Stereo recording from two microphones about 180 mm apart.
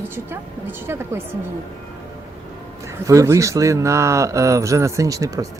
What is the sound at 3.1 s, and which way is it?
Speech, 15° right (ahead or behind).